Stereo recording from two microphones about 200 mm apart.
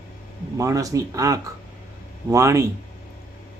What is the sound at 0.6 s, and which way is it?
Speech, 15° right (ahead or behind).